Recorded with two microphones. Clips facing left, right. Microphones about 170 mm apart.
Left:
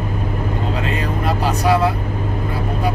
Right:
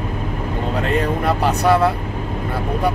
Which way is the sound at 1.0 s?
60° right (ahead or behind).